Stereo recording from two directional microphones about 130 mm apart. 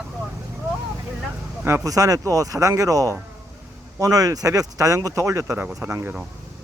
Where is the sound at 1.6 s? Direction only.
25° right (ahead or behind).